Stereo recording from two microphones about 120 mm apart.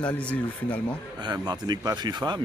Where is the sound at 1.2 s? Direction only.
35° right (ahead or behind).